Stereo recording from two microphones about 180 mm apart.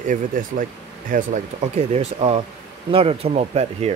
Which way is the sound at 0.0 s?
45° right (ahead or behind).